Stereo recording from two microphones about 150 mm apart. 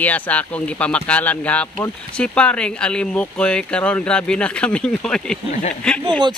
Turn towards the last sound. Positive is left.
turn(degrees=-30)  # may be behind; listen again after turning